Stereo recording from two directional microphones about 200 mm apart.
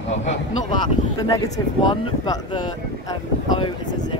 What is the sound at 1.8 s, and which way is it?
Speech, 20° left (ahead or behind).